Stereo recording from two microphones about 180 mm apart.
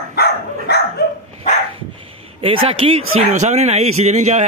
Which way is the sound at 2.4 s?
30° right (ahead or behind).